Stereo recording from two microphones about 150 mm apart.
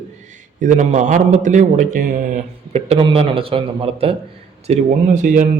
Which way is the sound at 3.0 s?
35° right (ahead or behind).